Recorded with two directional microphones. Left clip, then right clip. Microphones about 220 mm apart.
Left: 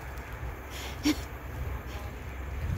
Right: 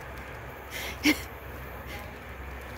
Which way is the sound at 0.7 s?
20° right (ahead or behind).